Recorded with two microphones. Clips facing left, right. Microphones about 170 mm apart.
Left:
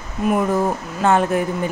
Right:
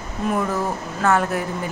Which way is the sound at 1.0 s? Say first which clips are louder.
Left 3 dB; 20° left (ahead or behind).